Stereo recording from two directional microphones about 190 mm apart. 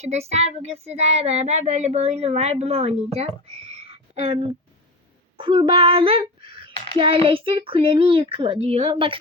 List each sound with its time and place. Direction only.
0.0 s speech: 35° right (ahead or behind)